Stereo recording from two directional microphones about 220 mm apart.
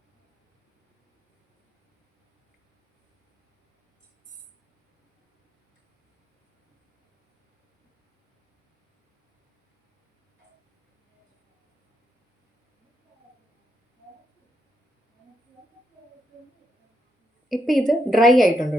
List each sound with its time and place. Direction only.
17.5 s a woman's voice: centre (ahead or behind)